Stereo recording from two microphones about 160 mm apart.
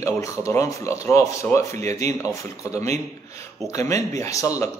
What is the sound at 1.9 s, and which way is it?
Speech, 45° right (ahead or behind).